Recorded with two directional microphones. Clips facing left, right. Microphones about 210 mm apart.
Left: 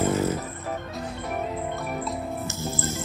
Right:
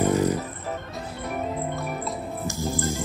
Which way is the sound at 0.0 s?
15° right (ahead or behind).